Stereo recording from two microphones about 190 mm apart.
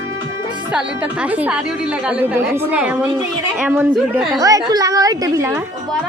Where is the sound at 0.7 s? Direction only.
5° right (ahead or behind).